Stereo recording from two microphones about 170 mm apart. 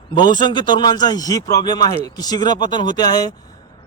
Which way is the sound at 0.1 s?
25° left (ahead or behind).